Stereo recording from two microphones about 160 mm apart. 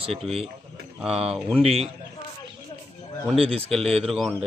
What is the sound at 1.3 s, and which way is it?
Speech, 5° right (ahead or behind).